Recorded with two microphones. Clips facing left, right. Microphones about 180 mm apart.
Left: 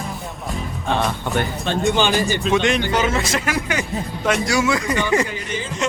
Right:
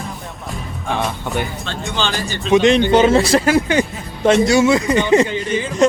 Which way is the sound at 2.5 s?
20° right (ahead or behind).